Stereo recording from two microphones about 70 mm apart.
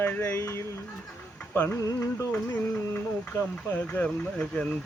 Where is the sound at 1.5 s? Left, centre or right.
Left.